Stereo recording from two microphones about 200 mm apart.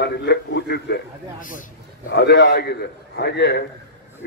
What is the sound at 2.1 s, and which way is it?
Speech, 55° left (ahead or behind).